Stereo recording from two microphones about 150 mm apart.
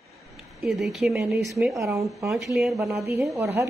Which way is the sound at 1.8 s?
20° right (ahead or behind).